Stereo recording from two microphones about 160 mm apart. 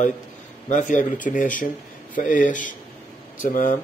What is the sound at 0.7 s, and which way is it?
Speech, 55° left (ahead or behind).